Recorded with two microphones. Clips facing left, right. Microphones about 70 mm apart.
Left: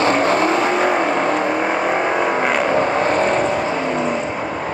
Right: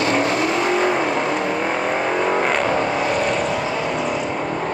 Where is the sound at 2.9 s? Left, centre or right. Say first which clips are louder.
Left 3 dB; left.